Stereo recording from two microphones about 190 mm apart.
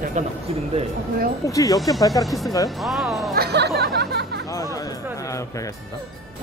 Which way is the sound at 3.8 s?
60° right (ahead or behind).